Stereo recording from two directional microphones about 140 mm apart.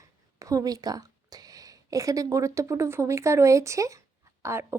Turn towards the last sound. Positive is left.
turn(degrees=-20)  # may be behind; listen again after turning